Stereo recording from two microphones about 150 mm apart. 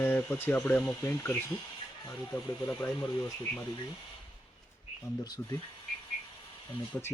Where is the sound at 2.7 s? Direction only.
10° left (ahead or behind).